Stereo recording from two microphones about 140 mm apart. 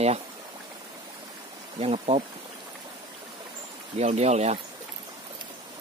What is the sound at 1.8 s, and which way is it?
Speech, 45° right (ahead or behind).